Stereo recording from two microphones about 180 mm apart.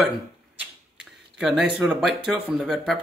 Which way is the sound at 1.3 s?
5° right (ahead or behind).